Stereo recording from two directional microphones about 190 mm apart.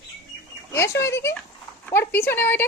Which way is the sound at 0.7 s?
15° left (ahead or behind).